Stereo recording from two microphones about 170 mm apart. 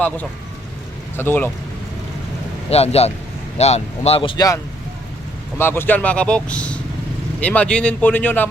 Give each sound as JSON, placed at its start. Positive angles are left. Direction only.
{"t": 1.1, "sound": "speech", "side_deg": 10}
{"t": 2.6, "sound": "speech", "side_deg": 35}
{"t": 5.5, "sound": "speech", "side_deg": 15}